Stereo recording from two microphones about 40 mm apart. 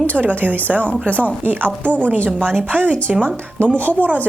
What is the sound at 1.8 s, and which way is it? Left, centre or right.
Speech, left.